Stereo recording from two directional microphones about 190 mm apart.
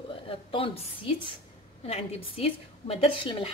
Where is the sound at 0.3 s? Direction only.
30° left (ahead or behind).